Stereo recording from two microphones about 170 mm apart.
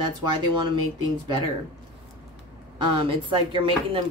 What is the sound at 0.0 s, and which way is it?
Speech, 25° right (ahead or behind).